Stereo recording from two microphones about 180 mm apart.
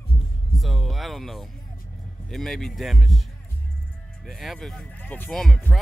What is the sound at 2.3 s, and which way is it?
Speech, centre (ahead or behind).